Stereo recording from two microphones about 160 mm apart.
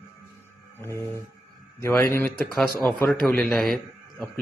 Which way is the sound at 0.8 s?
15° left (ahead or behind).